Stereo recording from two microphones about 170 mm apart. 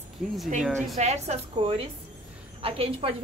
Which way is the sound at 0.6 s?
Centre (ahead or behind).